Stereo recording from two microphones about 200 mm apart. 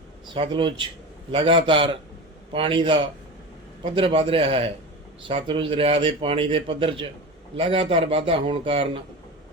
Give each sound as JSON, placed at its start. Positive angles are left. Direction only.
{"t": 0.3, "sound": "a man's voice", "side_deg": -25}